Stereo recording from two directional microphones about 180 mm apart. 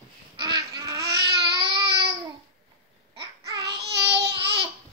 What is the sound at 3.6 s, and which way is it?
Child singing, 65° right (ahead or behind).